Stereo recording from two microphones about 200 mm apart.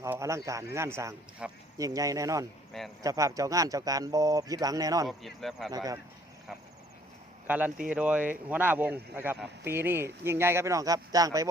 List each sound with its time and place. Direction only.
0.0 s speech: 15° right (ahead or behind)
5.0 s speech: centre (ahead or behind)
5.7 s speech: 20° right (ahead or behind)
7.4 s speech: 10° right (ahead or behind)